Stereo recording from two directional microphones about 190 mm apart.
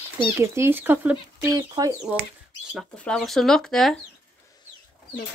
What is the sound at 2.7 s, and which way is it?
Speech, centre (ahead or behind).